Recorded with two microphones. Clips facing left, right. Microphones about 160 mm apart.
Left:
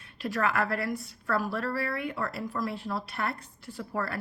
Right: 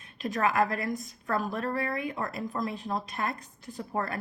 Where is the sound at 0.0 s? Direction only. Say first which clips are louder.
Right 1 dB; 20° right (ahead or behind).